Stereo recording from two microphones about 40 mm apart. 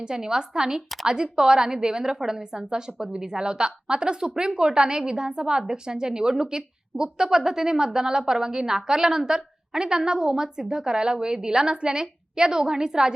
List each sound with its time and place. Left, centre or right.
0.0 s a woman's voice: centre